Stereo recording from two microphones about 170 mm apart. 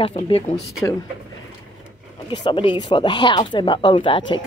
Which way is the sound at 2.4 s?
25° left (ahead or behind).